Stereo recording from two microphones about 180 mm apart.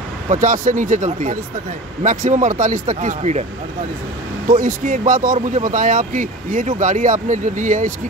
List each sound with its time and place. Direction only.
0.3 s speech: 45° right (ahead or behind)
4.5 s speech: 45° right (ahead or behind)